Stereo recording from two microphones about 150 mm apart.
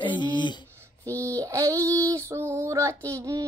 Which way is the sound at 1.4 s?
20° right (ahead or behind).